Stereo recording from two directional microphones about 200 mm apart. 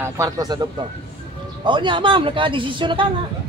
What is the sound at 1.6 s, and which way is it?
Speech, 25° right (ahead or behind).